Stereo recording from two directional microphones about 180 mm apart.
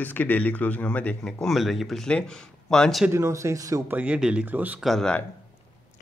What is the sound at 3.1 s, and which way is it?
Speech, 15° right (ahead or behind).